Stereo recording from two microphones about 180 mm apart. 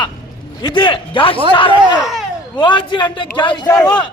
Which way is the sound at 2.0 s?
Centre (ahead or behind).